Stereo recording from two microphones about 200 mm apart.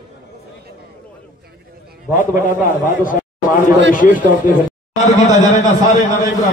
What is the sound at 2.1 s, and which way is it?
A man's voice, 40° left (ahead or behind).